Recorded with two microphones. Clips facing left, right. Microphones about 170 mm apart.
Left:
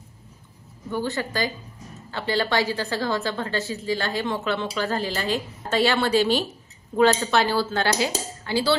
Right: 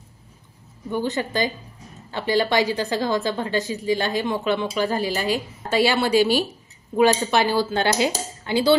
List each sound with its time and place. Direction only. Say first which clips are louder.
0.8 s a woman's voice: right 2 dB; 15° right (ahead or behind)